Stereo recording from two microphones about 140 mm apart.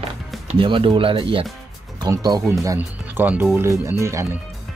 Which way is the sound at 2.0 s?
30° right (ahead or behind).